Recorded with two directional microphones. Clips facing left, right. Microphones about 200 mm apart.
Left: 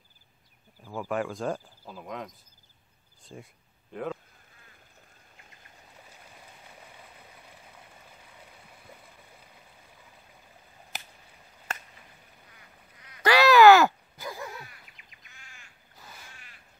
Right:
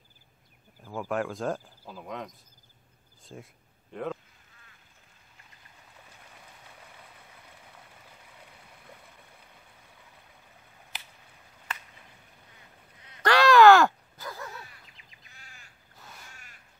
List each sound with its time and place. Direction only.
0.9 s speech: centre (ahead or behind)
10.9 s a sound: 45° left (ahead or behind)
13.2 s groan: 5° left (ahead or behind)
14.9 s crow: 30° right (ahead or behind)
16.0 s crow: centre (ahead or behind)